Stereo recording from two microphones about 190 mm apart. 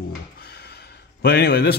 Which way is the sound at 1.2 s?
55° left (ahead or behind).